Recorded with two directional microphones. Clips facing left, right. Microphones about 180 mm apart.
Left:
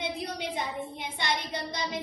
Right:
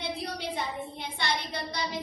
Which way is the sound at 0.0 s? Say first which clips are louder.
Left 1 dB; 20° left (ahead or behind).